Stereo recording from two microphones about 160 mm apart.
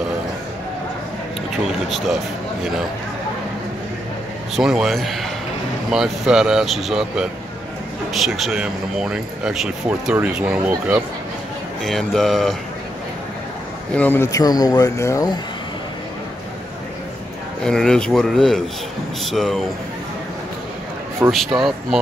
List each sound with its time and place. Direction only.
1.9 s a man's voice: centre (ahead or behind)
4.6 s speech: centre (ahead or behind)
11.8 s speech: centre (ahead or behind)
13.9 s speech: 10° left (ahead or behind)
17.6 s speech: 5° left (ahead or behind)
21.3 s speech: centre (ahead or behind)